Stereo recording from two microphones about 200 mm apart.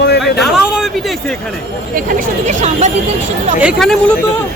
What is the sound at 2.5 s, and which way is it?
Speech, 35° right (ahead or behind).